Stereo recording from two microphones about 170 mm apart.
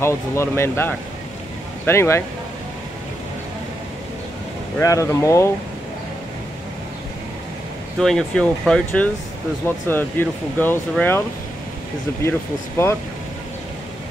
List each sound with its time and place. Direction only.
0.0 s speech: 15° left (ahead or behind)
4.7 s speech: 15° left (ahead or behind)
8.0 s speech: 5° left (ahead or behind)